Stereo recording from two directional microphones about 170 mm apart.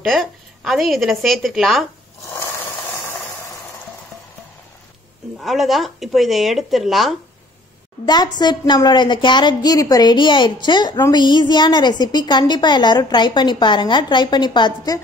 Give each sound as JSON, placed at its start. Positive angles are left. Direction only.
{"t": 0.0, "sound": "a woman's voice", "side_deg": 0}
{"t": 2.3, "sound": "a sound", "side_deg": 15}
{"t": 5.4, "sound": "a woman's voice", "side_deg": 0}
{"t": 8.0, "sound": "a woman's voice", "side_deg": 25}